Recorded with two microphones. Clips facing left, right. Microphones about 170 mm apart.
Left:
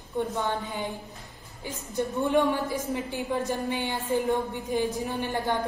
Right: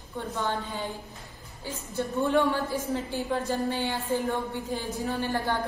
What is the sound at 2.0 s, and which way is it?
A woman's voice, 15° left (ahead or behind).